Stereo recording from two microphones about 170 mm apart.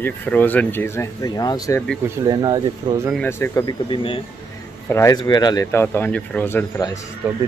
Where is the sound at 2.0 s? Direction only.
15° right (ahead or behind).